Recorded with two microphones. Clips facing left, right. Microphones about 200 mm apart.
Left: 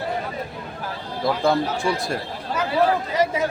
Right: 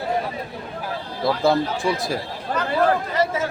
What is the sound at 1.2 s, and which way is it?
Speech, centre (ahead or behind).